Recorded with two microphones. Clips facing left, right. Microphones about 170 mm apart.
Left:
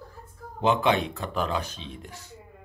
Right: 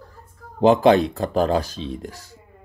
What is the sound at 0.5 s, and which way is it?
Speech, 40° right (ahead or behind).